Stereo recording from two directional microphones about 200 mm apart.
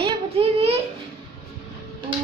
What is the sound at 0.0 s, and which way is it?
Child singing, 30° right (ahead or behind).